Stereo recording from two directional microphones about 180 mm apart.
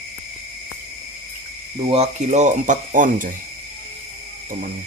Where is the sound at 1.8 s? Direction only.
35° right (ahead or behind).